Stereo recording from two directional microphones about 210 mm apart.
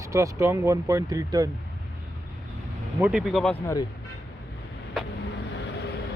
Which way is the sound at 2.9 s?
5° right (ahead or behind).